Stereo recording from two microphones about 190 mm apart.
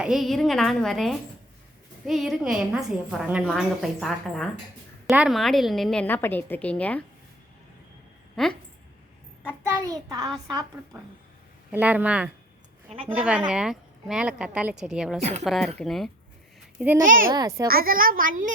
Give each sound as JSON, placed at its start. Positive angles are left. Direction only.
{"t": 0.0, "sound": "a woman's voice", "side_deg": 0}
{"t": 8.4, "sound": "a woman's voice", "side_deg": 0}
{"t": 9.9, "sound": "a child's voice", "side_deg": -20}
{"t": 11.7, "sound": "a woman's voice", "side_deg": -10}
{"t": 15.2, "sound": "a woman's voice", "side_deg": -35}
{"t": 15.4, "sound": "a woman's voice", "side_deg": 0}
{"t": 17.0, "sound": "a child's voice", "side_deg": -45}
{"t": 17.3, "sound": "a child's voice", "side_deg": -20}
{"t": 17.7, "sound": "a child's voice", "side_deg": -50}